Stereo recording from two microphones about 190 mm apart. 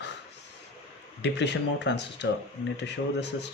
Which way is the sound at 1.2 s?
65° left (ahead or behind).